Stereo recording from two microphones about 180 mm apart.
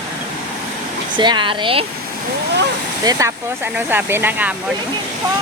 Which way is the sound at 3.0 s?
15° right (ahead or behind).